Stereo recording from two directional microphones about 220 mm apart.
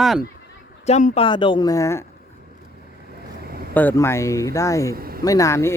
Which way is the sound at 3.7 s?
10° left (ahead or behind).